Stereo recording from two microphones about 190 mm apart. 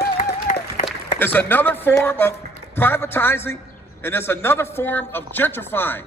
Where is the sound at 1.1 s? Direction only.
10° left (ahead or behind).